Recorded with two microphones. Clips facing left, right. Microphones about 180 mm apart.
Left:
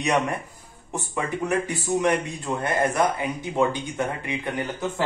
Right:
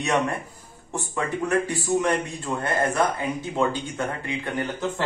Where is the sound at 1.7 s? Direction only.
20° left (ahead or behind).